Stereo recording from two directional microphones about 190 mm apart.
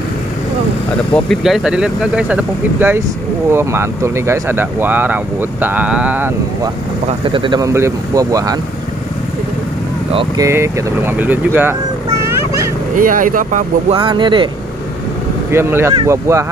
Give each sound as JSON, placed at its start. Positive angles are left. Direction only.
{"t": 1.1, "sound": "speech", "side_deg": 0}
{"t": 7.2, "sound": "speech", "side_deg": -25}
{"t": 10.1, "sound": "speech", "side_deg": -20}
{"t": 12.9, "sound": "speech", "side_deg": -45}
{"t": 13.9, "sound": "speech", "side_deg": -25}
{"t": 15.5, "sound": "speech", "side_deg": -10}